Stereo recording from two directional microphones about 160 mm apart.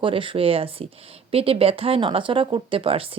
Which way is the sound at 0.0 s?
35° right (ahead or behind).